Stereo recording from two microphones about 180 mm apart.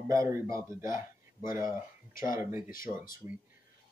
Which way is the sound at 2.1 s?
50° left (ahead or behind).